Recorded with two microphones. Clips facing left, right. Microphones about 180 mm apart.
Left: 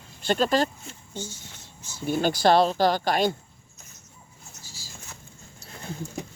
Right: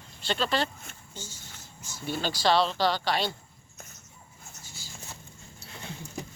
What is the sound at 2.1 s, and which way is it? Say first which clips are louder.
Speech: left 6 dB; 50° left (ahead or behind).